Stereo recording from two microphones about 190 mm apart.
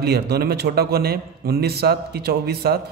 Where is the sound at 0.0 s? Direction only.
55° right (ahead or behind).